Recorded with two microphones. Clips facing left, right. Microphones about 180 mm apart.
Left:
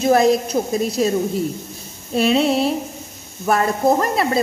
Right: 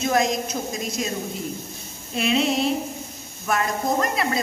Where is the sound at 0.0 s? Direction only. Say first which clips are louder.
Left 7 dB; 35° left (ahead or behind).